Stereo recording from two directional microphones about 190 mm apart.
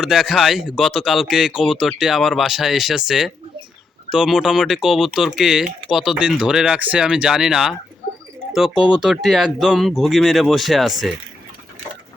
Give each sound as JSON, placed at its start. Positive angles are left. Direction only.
{"t": 0.0, "sound": "speech", "side_deg": 0}